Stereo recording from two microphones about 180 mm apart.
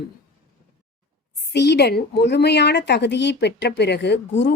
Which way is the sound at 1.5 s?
65° left (ahead or behind).